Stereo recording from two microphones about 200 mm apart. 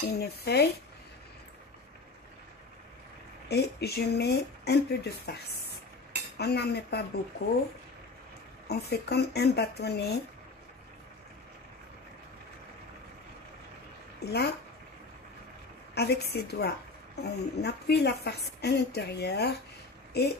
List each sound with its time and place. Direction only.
0.1 s speech: 50° left (ahead or behind)
3.4 s speech: 55° left (ahead or behind)
6.3 s speech: 55° left (ahead or behind)
8.6 s speech: 55° left (ahead or behind)
14.2 s speech: 55° left (ahead or behind)
15.9 s a woman's voice: 55° left (ahead or behind)